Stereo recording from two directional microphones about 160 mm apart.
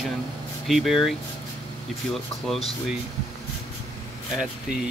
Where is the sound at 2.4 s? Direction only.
Centre (ahead or behind).